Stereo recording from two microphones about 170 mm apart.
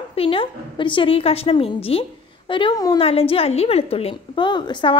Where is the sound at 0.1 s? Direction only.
35° left (ahead or behind).